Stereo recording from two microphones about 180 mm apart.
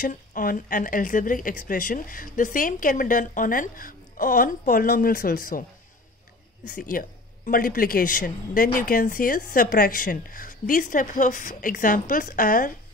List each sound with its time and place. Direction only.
0.0 s a woman's voice: 50° left (ahead or behind)
6.7 s a woman's voice: 50° left (ahead or behind)